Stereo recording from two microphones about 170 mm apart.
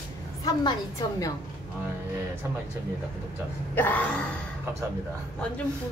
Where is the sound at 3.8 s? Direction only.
10° left (ahead or behind).